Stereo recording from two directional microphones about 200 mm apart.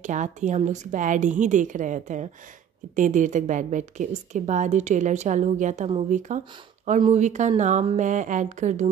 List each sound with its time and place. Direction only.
0.0 s a woman's voice: 35° right (ahead or behind)